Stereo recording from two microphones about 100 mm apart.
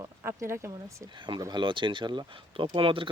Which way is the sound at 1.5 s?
55° right (ahead or behind).